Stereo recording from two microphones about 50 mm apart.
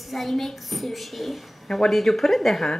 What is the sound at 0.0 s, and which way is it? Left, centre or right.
A woman's voice, centre.